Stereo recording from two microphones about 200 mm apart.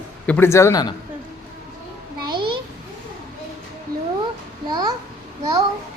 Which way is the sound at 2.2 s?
25° right (ahead or behind).